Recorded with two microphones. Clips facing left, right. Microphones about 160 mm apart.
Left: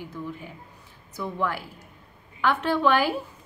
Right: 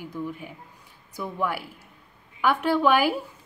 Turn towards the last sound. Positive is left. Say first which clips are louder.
# right 1 dB
turn(degrees=-10)  # may be behind; listen again after turning